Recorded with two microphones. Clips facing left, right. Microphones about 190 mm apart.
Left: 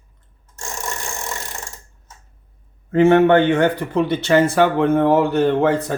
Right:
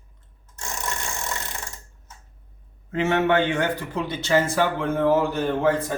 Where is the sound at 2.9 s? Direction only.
50° left (ahead or behind).